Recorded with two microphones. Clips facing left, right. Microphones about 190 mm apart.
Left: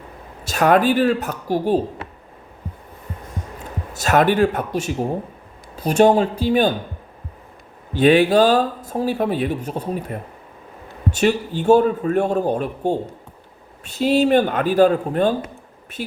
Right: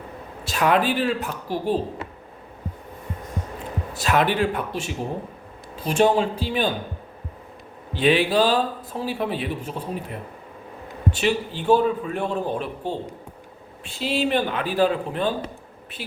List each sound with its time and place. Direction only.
0.4 s speech: 45° left (ahead or behind)
3.9 s speech: 45° left (ahead or behind)
7.9 s speech: 45° left (ahead or behind)